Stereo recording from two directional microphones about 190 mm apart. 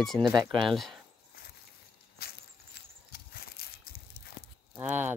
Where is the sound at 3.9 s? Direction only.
55° left (ahead or behind).